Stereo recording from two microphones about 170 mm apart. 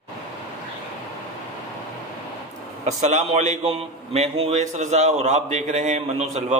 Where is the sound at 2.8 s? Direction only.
45° right (ahead or behind).